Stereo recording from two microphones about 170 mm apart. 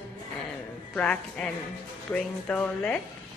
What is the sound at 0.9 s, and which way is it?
Speech, 5° left (ahead or behind).